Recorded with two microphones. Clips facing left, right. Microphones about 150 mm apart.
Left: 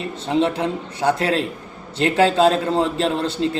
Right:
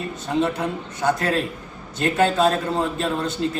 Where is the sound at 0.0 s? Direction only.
25° left (ahead or behind).